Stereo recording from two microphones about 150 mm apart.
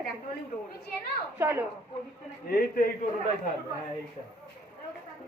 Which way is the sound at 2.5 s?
70° left (ahead or behind).